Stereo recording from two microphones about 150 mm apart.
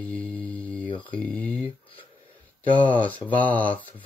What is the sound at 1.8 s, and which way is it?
Speech, 35° left (ahead or behind).